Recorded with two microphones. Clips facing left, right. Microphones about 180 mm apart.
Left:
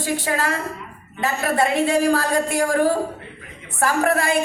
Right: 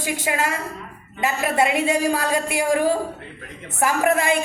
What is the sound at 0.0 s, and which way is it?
A woman's voice, 15° right (ahead or behind).